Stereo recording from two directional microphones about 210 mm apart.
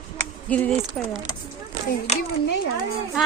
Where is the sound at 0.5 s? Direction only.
5° left (ahead or behind).